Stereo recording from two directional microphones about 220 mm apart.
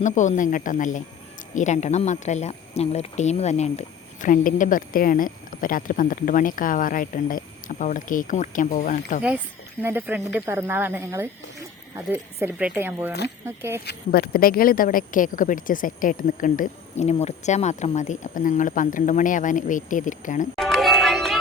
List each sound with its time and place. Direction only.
0.0 s speech: 35° left (ahead or behind)
9.8 s speech: 10° right (ahead or behind)
13.8 s speech: 45° left (ahead or behind)
20.6 s music: centre (ahead or behind)